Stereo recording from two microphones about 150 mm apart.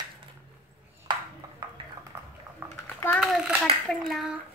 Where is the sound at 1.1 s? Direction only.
30° right (ahead or behind).